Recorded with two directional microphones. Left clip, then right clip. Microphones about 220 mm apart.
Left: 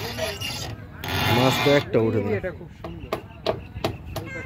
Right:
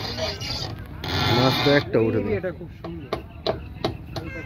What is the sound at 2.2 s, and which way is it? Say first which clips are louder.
Speech: right 1 dB; 30° right (ahead or behind).